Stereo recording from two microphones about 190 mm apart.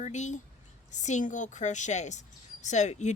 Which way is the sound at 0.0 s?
40° left (ahead or behind).